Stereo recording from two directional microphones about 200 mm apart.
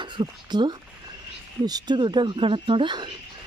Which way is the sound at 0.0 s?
25° right (ahead or behind).